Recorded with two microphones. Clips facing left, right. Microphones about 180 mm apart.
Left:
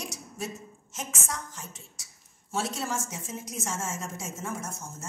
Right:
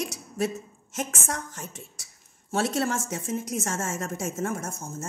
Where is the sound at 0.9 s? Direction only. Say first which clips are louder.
Right 5 dB; 55° right (ahead or behind).